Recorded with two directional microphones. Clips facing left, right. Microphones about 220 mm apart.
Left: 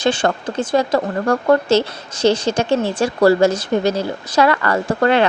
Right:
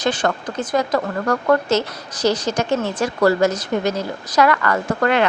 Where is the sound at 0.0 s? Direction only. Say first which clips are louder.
Left 3 dB; 30° left (ahead or behind).